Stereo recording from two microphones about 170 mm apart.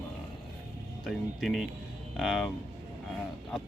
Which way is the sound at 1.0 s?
Centre (ahead or behind).